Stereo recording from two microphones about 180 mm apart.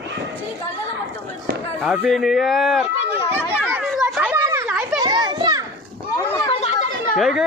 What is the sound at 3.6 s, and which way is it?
Children playing, 10° right (ahead or behind).